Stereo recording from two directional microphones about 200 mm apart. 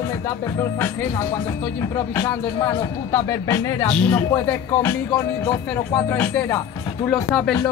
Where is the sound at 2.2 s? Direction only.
15° left (ahead or behind).